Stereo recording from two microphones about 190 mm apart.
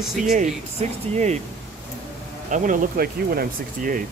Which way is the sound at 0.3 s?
40° right (ahead or behind).